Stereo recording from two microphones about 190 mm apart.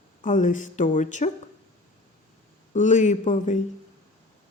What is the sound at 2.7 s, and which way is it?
Speech, 40° left (ahead or behind).